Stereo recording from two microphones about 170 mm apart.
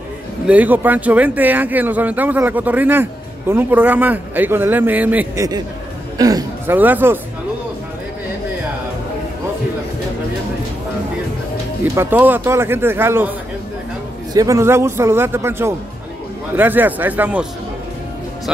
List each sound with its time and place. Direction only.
0.5 s a man's voice: 10° right (ahead or behind)
11.8 s speech: 10° right (ahead or behind)
14.3 s speech: 20° right (ahead or behind)